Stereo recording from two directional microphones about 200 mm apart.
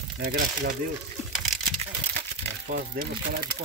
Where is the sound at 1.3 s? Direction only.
Centre (ahead or behind).